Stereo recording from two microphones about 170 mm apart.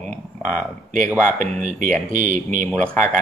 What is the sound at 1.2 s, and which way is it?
Speech, 50° right (ahead or behind).